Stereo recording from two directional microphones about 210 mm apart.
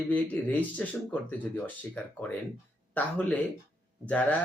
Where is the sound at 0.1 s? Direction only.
10° left (ahead or behind).